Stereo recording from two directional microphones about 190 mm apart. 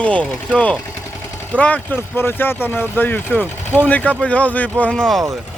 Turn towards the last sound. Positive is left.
turn(degrees=5)  # may be behind; listen again after turning